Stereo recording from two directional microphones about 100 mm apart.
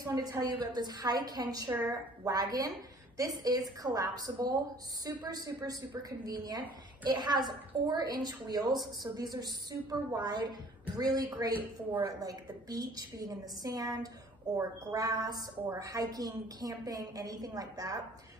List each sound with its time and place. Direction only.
0.0 s a woman's voice: 35° right (ahead or behind)